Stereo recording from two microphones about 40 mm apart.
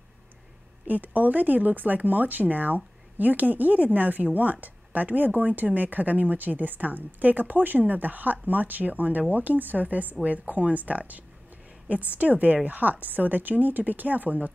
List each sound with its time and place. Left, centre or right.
0.8 s speech: right